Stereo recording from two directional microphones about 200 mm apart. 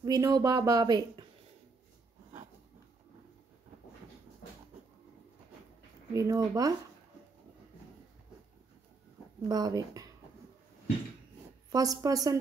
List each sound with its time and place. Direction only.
0.0 s speech: 20° right (ahead or behind)
6.1 s a woman's voice: 15° right (ahead or behind)
9.4 s speech: 20° right (ahead or behind)
11.7 s a woman's voice: 15° right (ahead or behind)